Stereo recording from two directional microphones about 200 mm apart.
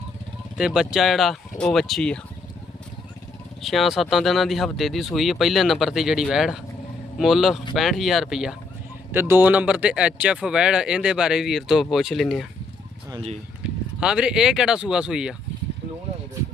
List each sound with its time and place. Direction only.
0.5 s speech: 5° right (ahead or behind)
3.6 s speech: centre (ahead or behind)
13.1 s speech: 25° right (ahead or behind)
14.0 s speech: 5° right (ahead or behind)